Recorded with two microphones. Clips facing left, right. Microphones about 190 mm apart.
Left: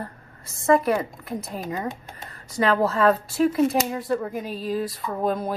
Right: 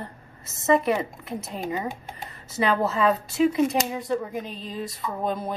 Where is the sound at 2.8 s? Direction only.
Centre (ahead or behind).